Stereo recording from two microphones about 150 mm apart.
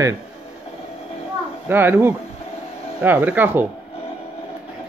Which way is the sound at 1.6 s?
15° right (ahead or behind).